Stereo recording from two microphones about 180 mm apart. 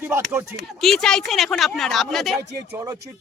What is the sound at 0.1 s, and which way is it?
Speech, 15° right (ahead or behind).